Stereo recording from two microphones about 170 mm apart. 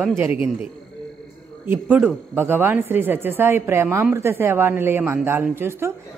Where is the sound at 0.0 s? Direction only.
10° right (ahead or behind).